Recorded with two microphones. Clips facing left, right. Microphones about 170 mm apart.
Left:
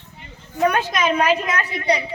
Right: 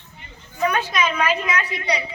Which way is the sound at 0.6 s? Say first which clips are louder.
Left 2 dB; 45° left (ahead or behind).